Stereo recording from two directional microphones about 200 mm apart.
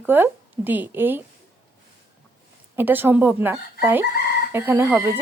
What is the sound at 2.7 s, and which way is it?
Speech, 10° right (ahead or behind).